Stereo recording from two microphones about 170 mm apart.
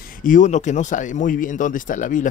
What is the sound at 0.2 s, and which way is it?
Speech, 50° left (ahead or behind).